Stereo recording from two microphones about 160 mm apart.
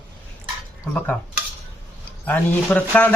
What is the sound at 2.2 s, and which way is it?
Speech, 10° left (ahead or behind).